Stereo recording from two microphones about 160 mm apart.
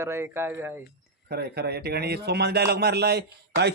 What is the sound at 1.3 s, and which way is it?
A man's voice, 80° right.